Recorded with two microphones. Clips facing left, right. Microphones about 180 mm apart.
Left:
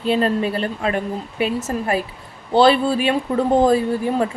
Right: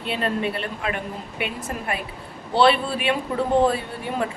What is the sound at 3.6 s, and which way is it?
Speech, 35° left (ahead or behind).